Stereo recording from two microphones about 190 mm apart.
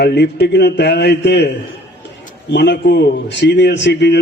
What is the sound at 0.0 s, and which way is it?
Speech, 60° left (ahead or behind).